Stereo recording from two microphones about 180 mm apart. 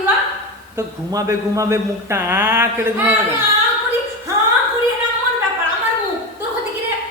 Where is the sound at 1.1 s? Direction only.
15° right (ahead or behind).